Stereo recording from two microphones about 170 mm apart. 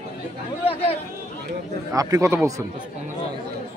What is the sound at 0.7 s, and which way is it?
Speech, 35° left (ahead or behind).